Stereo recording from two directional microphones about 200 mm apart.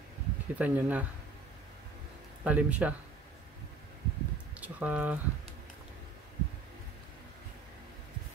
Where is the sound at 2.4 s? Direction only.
5° right (ahead or behind).